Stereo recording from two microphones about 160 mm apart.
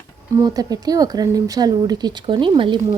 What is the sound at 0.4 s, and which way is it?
Stir, 25° right (ahead or behind).